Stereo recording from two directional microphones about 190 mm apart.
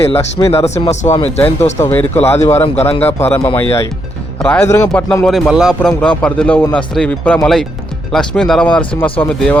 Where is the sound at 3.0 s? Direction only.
10° left (ahead or behind).